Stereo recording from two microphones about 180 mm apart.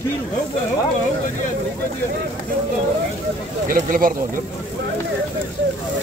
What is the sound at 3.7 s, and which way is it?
Speech, 50° right (ahead or behind).